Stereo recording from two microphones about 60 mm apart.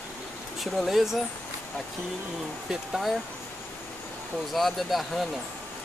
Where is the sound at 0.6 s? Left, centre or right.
Centre.